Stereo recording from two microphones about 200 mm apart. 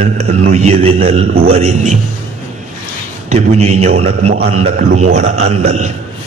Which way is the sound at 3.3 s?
30° right (ahead or behind).